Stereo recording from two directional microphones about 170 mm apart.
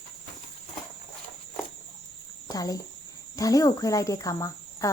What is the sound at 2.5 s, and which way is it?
Speech, 20° left (ahead or behind).